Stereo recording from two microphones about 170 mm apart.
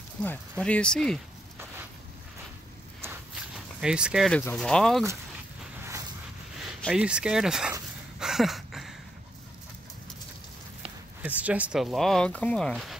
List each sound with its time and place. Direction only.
0.2 s speech: 10° left (ahead or behind)
3.5 s speech: 5° right (ahead or behind)
5.8 s a sound: 15° right (ahead or behind)
6.9 s speech: 5° right (ahead or behind)
8.2 s a sound: centre (ahead or behind)
11.2 s speech: 10° right (ahead or behind)